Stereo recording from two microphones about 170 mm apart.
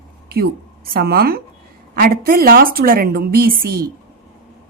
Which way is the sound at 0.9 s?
60° right (ahead or behind).